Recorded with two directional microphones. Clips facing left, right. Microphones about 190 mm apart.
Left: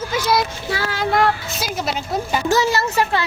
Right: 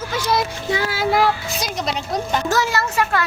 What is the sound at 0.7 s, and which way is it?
A child's voice, 10° right (ahead or behind).